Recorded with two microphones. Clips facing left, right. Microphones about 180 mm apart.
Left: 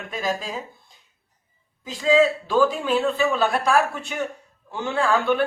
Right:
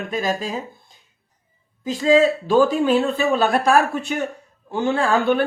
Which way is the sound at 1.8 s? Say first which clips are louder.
Right 3 dB; 40° right (ahead or behind).